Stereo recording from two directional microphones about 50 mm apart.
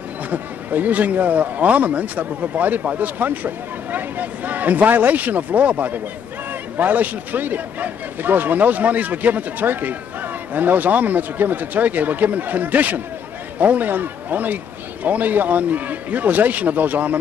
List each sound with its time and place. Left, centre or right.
0.3 s speech: right